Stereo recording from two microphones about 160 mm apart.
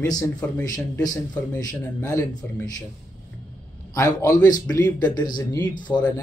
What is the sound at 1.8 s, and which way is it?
Speech, 10° left (ahead or behind).